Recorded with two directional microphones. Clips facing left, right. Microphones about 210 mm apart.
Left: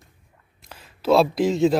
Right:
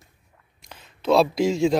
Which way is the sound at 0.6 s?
5° left (ahead or behind).